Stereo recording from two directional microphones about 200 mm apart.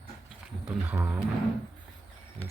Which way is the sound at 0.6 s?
10° right (ahead or behind).